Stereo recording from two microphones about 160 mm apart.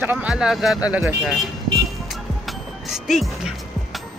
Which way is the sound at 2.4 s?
Centre (ahead or behind).